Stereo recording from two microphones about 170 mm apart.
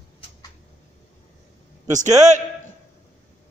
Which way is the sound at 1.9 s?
45° right (ahead or behind).